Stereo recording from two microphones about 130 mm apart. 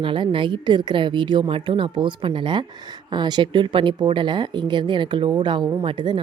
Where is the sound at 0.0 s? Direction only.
40° right (ahead or behind).